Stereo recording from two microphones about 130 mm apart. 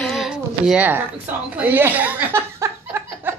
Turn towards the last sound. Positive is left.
turn(degrees=-20)  # may be behind; listen again after turning